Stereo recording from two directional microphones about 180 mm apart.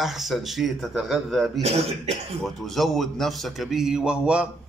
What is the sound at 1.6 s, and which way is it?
Speech, 35° right (ahead or behind).